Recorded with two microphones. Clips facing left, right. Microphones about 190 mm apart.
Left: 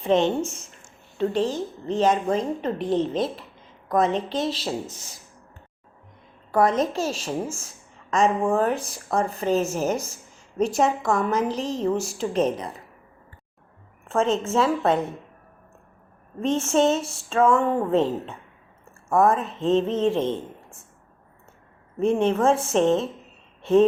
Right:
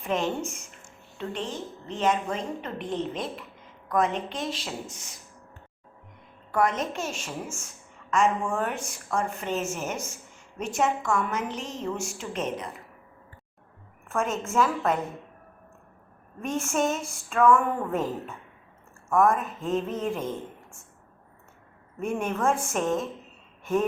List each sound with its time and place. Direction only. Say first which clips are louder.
0.0 s a woman's voice: left 7 dB; 30° left (ahead or behind)
6.5 s a woman's voice: left 5 dB; 35° left (ahead or behind)
14.1 s a woman's voice: left 6 dB; 25° left (ahead or behind)
16.4 s a woman's voice: left 6 dB; 25° left (ahead or behind)
21.9 s a woman's voice: left 8 dB; 30° left (ahead or behind)